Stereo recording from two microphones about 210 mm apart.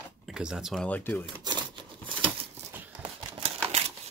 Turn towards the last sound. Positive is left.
turn(degrees=-30)  # may be behind; listen again after turning